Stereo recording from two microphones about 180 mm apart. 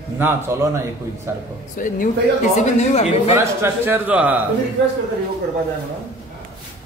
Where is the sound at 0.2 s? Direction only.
15° right (ahead or behind).